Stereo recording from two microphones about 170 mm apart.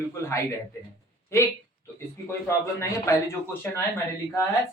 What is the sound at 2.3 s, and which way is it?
Speech, 15° left (ahead or behind).